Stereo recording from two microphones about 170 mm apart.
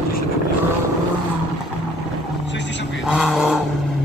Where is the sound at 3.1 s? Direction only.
5° right (ahead or behind).